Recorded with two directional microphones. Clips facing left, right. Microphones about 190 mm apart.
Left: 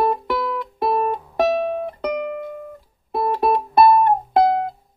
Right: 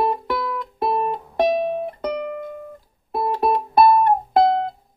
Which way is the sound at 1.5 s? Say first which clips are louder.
Even; 20° right (ahead or behind).